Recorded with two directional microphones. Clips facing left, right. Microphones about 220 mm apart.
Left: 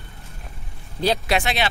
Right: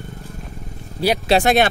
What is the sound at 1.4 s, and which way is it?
Speech, 50° right (ahead or behind).